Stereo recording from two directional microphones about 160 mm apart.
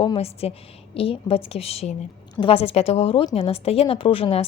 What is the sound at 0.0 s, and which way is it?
A woman's voice, 35° left (ahead or behind).